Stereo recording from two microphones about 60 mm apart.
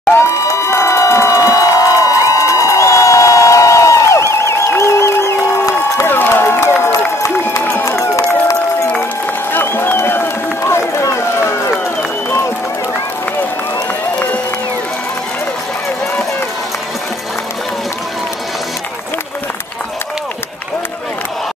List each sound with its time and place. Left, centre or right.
0.1 s crowd: left
6.0 s run: left
7.7 s run: left
9.5 s run: left